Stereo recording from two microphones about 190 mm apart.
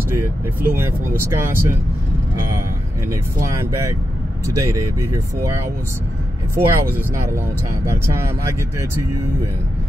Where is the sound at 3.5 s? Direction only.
15° right (ahead or behind).